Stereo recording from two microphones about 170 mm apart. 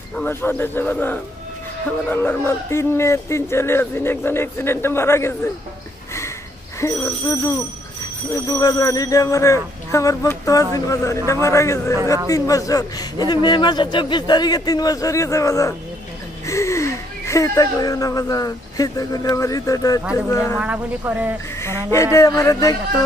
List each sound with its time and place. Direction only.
0.1 s speech: 10° left (ahead or behind)
6.8 s a man's voice: 15° left (ahead or behind)
20.5 s a woman's voice: 10° right (ahead or behind)
21.5 s a man's voice: 15° left (ahead or behind)